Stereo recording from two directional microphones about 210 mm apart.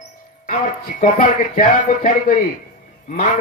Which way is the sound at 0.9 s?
40° left (ahead or behind).